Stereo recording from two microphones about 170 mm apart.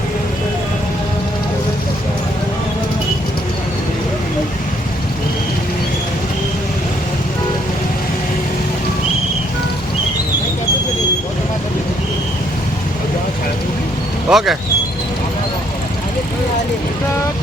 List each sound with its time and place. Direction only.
14.3 s speech: centre (ahead or behind)